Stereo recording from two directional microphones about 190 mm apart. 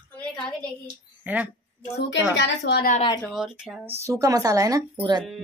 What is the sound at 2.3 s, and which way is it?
Speech, 65° left (ahead or behind).